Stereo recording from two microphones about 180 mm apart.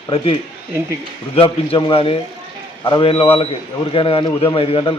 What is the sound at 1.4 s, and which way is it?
A man's voice, 30° left (ahead or behind).